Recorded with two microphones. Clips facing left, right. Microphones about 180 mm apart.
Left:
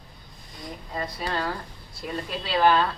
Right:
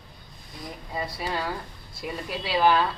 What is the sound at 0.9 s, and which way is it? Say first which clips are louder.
Speech: even; 10° right (ahead or behind).